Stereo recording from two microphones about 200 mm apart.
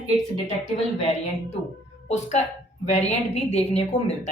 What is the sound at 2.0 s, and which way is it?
A woman's voice, 35° left (ahead or behind).